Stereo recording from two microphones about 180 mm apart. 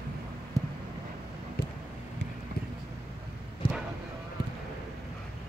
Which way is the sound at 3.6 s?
25° left (ahead or behind).